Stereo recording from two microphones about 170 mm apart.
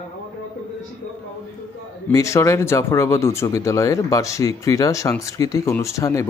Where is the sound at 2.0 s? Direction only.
15° left (ahead or behind).